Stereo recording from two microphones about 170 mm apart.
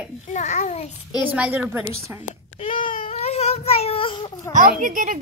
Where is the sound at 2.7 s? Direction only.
50° left (ahead or behind).